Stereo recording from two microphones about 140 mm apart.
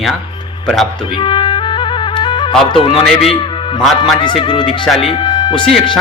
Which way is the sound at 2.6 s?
40° left (ahead or behind).